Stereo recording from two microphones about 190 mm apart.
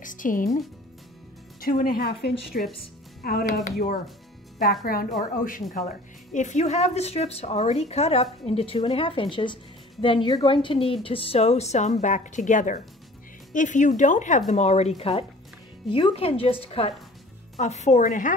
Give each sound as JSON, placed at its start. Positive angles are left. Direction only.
{"t": 0.0, "sound": "speech", "side_deg": 45}
{"t": 1.6, "sound": "a woman's voice", "side_deg": 50}